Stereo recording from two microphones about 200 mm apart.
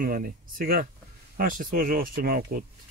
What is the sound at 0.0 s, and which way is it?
Speech, 45° right (ahead or behind).